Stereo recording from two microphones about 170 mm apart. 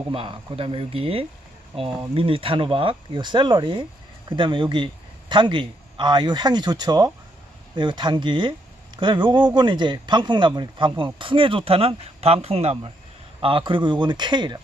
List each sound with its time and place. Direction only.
0.1 s speech: 35° right (ahead or behind)